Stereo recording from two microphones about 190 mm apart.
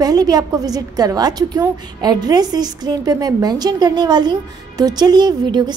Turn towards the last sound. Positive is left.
turn(degrees=-25)  # may be behind; listen again after turning